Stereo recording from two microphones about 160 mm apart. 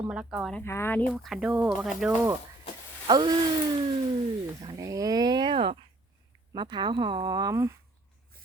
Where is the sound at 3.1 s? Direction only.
25° right (ahead or behind).